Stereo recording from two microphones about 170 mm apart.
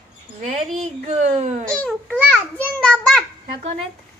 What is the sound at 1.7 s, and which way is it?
A child's voice, 5° left (ahead or behind).